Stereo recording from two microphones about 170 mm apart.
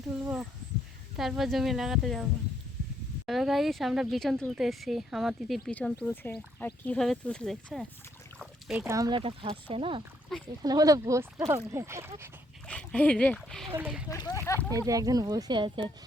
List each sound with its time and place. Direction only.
1.1 s speech: centre (ahead or behind)
3.2 s speech: centre (ahead or behind)
8.4 s a sound: centre (ahead or behind)
8.9 s speech: 20° right (ahead or behind)
12.6 s speech: 5° left (ahead or behind)
13.7 s speech: 10° right (ahead or behind)
14.1 s speech: 20° left (ahead or behind)
14.7 s speech: 20° right (ahead or behind)